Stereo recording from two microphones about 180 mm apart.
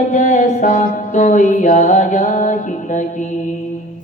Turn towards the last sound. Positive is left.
turn(degrees=45)  # may be behind; listen again after turning